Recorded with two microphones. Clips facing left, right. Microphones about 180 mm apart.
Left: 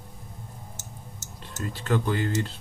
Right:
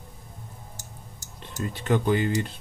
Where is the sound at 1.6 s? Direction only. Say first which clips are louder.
Right 2 dB; 20° right (ahead or behind).